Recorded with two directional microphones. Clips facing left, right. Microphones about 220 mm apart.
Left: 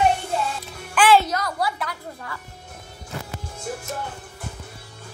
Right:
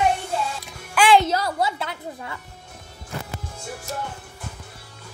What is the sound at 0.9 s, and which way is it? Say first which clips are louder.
Music: even; 15° right (ahead or behind).